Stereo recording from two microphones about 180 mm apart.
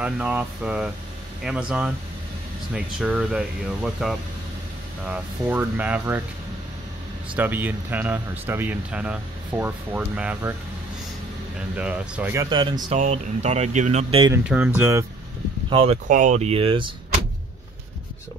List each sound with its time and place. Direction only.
0.0 s speech: 5° right (ahead or behind)
7.3 s speech: 10° right (ahead or behind)
11.7 s speech: 5° right (ahead or behind)
12.4 s speech: 25° right (ahead or behind)
12.9 s speech: 40° right (ahead or behind)
14.5 s speech: 10° right (ahead or behind)
15.7 s speech: 30° right (ahead or behind)
16.1 s speech: 45° right (ahead or behind)